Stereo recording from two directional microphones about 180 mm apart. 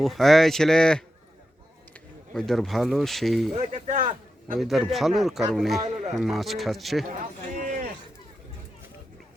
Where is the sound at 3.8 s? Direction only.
45° right (ahead or behind).